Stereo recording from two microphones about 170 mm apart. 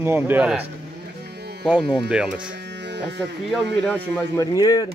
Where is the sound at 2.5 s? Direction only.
90° right.